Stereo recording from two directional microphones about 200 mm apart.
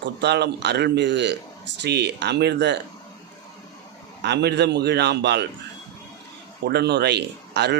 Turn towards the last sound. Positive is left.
turn(degrees=-55)  # may be behind; listen again after turning